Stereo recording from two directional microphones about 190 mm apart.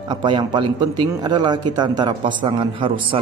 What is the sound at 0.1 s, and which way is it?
A man's voice, 25° right (ahead or behind).